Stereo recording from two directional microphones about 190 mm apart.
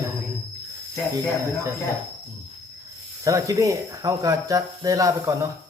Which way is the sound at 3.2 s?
15° right (ahead or behind).